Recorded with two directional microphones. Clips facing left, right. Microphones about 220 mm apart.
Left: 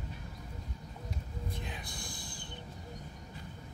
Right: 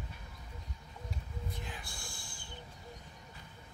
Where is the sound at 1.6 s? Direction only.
20° left (ahead or behind).